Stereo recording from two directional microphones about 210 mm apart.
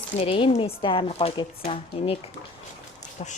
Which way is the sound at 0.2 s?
25° left (ahead or behind).